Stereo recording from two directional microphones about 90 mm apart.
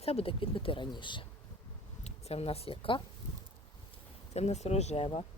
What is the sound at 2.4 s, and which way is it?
Speech, 90° left.